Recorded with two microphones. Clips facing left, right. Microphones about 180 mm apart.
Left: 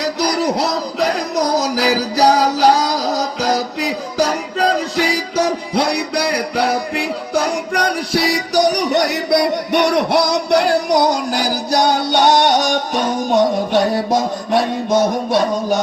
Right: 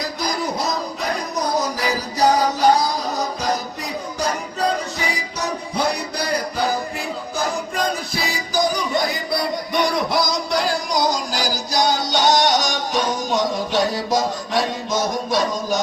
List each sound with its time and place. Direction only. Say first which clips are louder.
0.0 s music: left 7 dB; 75° left (ahead or behind)
5.7 s music: left 3 dB; 75° left (ahead or behind); by 15.8 s 60° left (ahead or behind)